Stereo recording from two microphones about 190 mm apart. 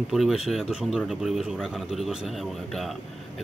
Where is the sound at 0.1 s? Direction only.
Centre (ahead or behind).